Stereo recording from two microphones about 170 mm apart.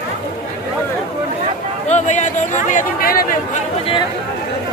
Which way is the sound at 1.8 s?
45° left (ahead or behind).